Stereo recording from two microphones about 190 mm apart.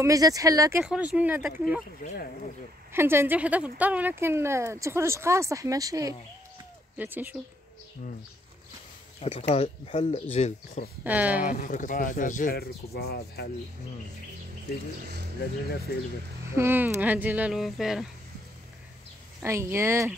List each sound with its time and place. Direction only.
0.0 s speech: 15° right (ahead or behind)
0.8 s speech: 5° right (ahead or behind)
2.0 s speech: 45° left (ahead or behind)
2.9 s speech: 10° right (ahead or behind)
9.2 s speech: 35° left (ahead or behind)
11.1 s speech: 10° right (ahead or behind)
11.4 s speech: 45° left (ahead or behind)
16.5 s speech: 10° right (ahead or behind)
19.4 s speech: 15° right (ahead or behind)